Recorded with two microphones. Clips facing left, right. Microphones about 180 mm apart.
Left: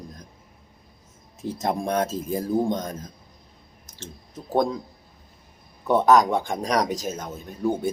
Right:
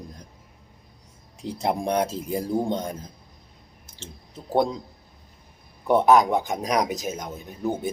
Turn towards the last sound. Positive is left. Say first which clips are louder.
# left 2 dB
turn(degrees=-10)  # may be behind; listen again after turning